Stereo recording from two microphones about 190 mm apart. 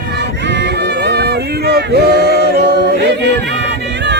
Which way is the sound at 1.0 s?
60° right (ahead or behind).